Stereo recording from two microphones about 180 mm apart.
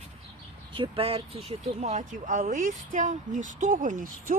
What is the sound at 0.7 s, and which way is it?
Speech, 30° right (ahead or behind).